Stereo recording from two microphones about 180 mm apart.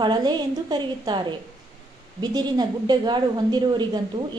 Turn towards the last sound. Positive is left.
turn(degrees=-25)  # may be behind; listen again after turning